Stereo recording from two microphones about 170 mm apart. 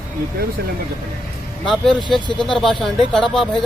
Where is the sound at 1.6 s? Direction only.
Centre (ahead or behind).